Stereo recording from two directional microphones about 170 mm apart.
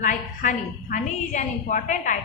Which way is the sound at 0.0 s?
50° left (ahead or behind).